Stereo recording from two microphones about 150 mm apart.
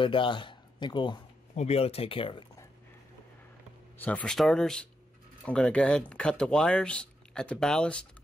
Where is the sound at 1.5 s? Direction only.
45° left (ahead or behind).